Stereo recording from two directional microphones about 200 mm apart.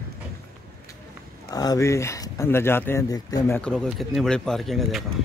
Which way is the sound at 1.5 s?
20° left (ahead or behind).